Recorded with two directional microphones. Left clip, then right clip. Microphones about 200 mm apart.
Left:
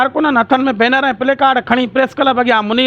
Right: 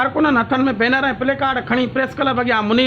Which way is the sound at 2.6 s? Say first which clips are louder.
Left 2 dB; 35° left (ahead or behind).